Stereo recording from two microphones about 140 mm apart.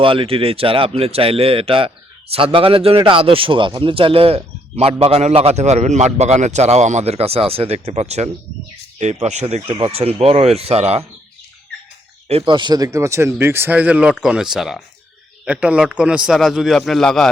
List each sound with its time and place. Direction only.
0.0 s a man's voice: 40° right (ahead or behind)
12.3 s a man's voice: 40° right (ahead or behind); by 17.2 s 5° left (ahead or behind)